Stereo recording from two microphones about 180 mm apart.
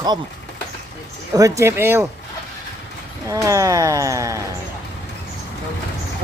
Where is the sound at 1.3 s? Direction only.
20° right (ahead or behind).